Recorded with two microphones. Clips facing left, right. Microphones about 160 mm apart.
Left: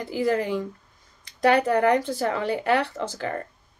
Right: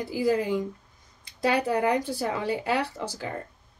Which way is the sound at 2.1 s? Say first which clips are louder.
Left 3 dB; 15° right (ahead or behind).